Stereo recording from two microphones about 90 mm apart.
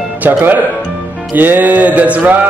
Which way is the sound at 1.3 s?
20° right (ahead or behind).